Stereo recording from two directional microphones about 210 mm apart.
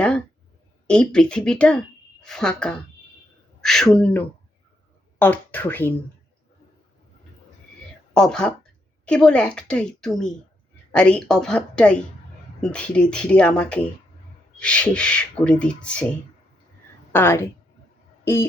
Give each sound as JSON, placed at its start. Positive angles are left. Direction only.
{"t": 0.9, "sound": "speech", "side_deg": 5}
{"t": 8.1, "sound": "speech", "side_deg": 5}
{"t": 17.1, "sound": "a woman's voice", "side_deg": 10}